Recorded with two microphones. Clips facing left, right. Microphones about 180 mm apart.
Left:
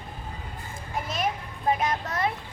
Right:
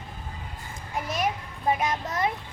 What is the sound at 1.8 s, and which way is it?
Speech, 10° right (ahead or behind).